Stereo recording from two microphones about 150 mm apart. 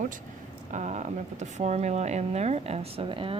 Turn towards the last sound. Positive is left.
turn(degrees=-35)  # may be behind; listen again after turning